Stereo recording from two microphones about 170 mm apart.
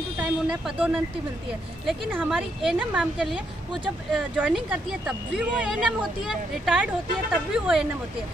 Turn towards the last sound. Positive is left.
turn(degrees=-5)  # may be behind; listen again after turning